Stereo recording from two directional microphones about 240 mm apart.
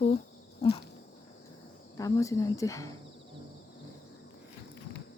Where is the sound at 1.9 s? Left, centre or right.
Centre.